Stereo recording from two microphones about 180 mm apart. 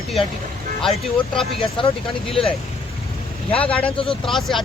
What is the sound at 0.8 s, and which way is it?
Speech, centre (ahead or behind).